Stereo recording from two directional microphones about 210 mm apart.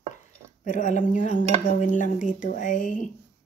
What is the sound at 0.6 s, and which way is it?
Speech, 35° left (ahead or behind).